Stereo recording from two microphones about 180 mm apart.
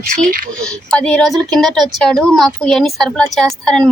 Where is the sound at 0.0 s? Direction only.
50° right (ahead or behind).